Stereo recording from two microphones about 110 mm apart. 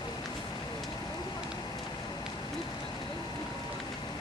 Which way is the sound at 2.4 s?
40° left (ahead or behind).